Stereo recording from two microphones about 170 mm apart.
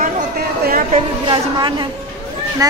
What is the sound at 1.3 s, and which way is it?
Speech, 25° right (ahead or behind).